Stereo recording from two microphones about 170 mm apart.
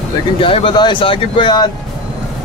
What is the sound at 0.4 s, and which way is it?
Speech, 30° left (ahead or behind).